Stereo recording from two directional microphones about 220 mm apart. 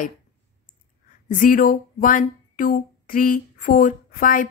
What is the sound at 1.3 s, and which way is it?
Speech, 40° left (ahead or behind).